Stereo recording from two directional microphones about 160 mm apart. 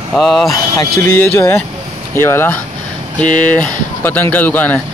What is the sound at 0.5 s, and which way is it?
Speech, 20° left (ahead or behind).